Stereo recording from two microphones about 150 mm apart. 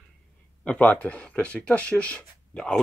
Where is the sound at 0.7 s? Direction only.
10° left (ahead or behind).